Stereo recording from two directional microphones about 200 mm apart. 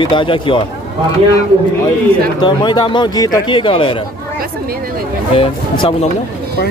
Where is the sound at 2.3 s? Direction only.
20° left (ahead or behind).